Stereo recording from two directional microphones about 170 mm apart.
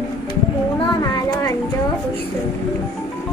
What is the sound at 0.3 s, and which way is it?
Music, 25° left (ahead or behind).